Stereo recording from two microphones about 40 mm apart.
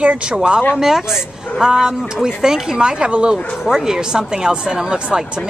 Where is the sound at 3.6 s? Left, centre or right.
Centre.